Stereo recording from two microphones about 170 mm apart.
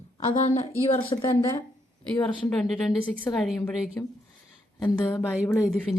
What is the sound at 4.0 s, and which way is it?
Speech, 10° left (ahead or behind).